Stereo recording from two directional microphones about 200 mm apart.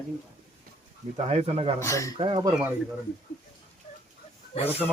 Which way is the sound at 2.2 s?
25° right (ahead or behind).